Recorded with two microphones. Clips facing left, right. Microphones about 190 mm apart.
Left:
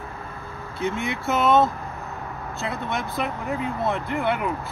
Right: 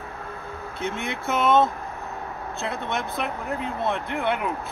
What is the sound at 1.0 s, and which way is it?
Speech, 5° left (ahead or behind).